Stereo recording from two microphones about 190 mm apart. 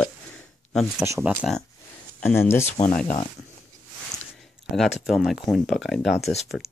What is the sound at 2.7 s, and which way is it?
Speech, 35° left (ahead or behind).